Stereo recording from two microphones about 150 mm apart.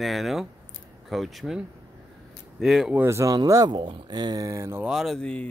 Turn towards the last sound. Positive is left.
turn(degrees=5)  # may be behind; listen again after turning